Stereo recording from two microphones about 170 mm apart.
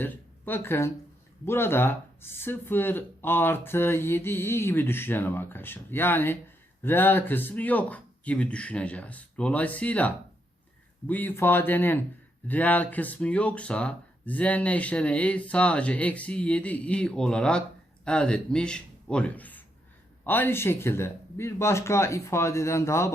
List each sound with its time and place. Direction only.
0.0 s speech: 10° left (ahead or behind)